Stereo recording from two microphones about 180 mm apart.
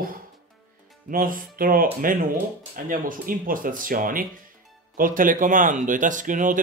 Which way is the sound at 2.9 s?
50° right (ahead or behind).